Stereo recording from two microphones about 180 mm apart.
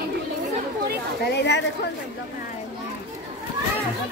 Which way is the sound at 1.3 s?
75° left (ahead or behind).